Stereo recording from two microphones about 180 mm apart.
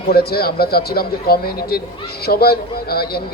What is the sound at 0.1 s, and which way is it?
Speech, 60° left (ahead or behind).